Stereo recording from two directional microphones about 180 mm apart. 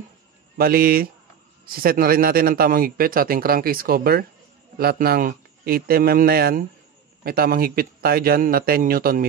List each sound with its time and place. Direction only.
0.6 s a man's voice: 55° right (ahead or behind)